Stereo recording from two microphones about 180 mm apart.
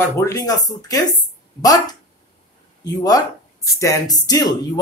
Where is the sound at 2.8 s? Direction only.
20° left (ahead or behind).